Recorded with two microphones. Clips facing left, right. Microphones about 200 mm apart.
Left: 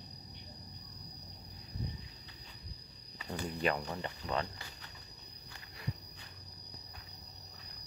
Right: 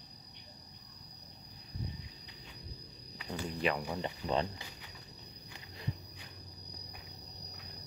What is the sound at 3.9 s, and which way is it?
Speech, 15° right (ahead or behind).